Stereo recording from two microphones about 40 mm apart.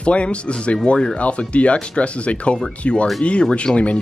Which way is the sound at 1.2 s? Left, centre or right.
Left.